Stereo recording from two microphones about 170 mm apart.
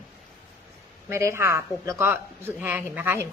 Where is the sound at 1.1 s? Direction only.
15° right (ahead or behind).